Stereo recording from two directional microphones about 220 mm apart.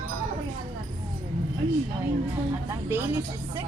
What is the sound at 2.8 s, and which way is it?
Speech, 10° right (ahead or behind).